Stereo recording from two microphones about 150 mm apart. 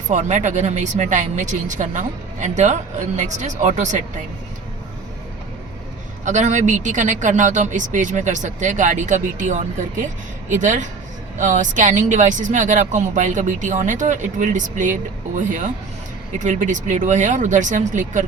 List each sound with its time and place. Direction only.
0.1 s speech: 55° right (ahead or behind)
6.2 s speech: 55° right (ahead or behind)